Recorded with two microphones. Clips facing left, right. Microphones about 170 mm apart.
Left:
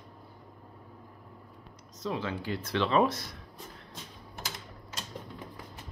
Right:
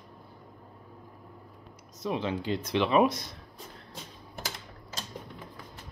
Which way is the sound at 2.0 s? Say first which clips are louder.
Right 3 dB; 20° right (ahead or behind).